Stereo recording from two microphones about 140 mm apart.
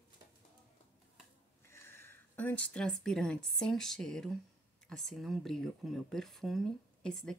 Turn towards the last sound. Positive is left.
turn(degrees=5)  # may be behind; listen again after turning